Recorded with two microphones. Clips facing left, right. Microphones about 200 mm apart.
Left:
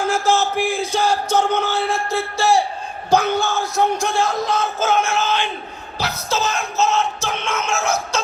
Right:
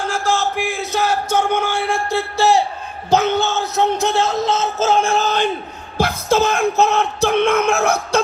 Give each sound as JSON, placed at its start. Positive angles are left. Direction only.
{"t": 0.1, "sound": "a sound", "side_deg": 5}
{"t": 2.4, "sound": "speech", "side_deg": -20}
{"t": 6.0, "sound": "speech", "side_deg": -50}